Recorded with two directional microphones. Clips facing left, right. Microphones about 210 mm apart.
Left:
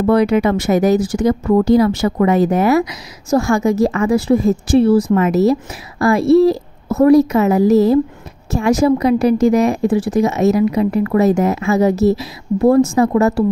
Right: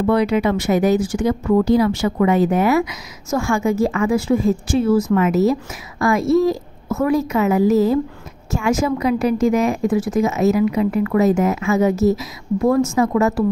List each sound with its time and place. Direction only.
0.0 s speech: 45° left (ahead or behind)